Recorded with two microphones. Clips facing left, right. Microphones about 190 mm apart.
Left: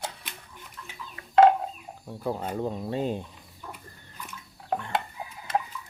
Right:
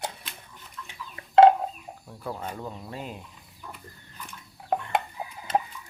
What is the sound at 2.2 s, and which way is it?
Speech, 25° left (ahead or behind).